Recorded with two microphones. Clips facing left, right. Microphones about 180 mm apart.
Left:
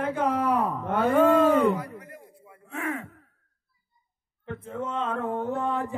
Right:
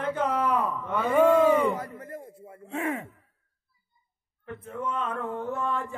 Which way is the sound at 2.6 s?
25° right (ahead or behind).